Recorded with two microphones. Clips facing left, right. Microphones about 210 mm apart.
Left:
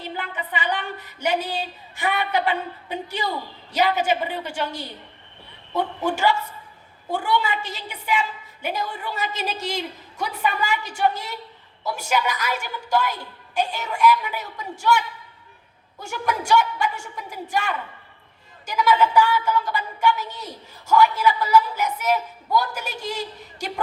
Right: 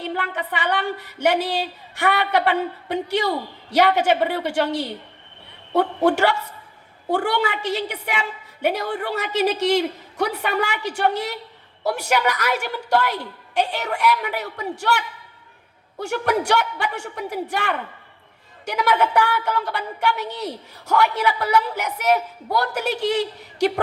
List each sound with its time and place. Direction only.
0.0 s a woman's voice: 70° right (ahead or behind)